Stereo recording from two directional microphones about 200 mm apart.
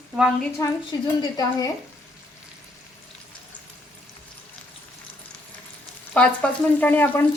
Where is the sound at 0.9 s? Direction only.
20° left (ahead or behind).